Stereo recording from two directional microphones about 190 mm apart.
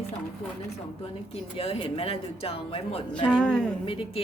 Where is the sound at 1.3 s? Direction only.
30° left (ahead or behind).